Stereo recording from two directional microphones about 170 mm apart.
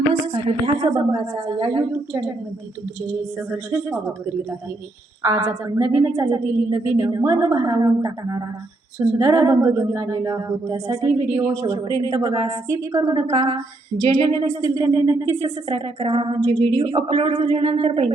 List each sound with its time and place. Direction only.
0.3 s speech: 30° right (ahead or behind)
3.5 s a woman's voice: 10° right (ahead or behind)
5.2 s a woman's voice: 15° right (ahead or behind)
15.7 s a woman's voice: 35° right (ahead or behind)